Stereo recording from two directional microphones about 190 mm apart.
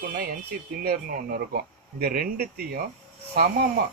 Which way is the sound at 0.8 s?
50° right (ahead or behind).